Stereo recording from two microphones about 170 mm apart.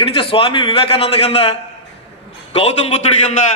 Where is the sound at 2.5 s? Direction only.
35° left (ahead or behind).